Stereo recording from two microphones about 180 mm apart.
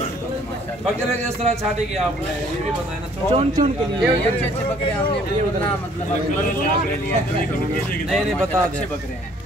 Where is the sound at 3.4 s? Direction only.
35° right (ahead or behind).